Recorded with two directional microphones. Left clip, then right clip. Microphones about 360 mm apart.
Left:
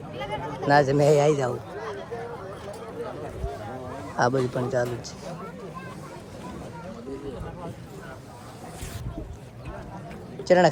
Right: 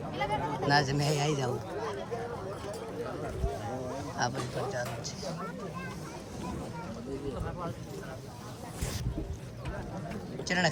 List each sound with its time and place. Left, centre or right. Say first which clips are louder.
0.2 s speech: even; right
0.7 s speech: left 11 dB; centre
4.2 s speech: left 10 dB; centre
10.4 s speech: left 11 dB; centre